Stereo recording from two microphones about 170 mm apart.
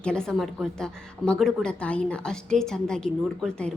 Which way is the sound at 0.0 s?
5° left (ahead or behind).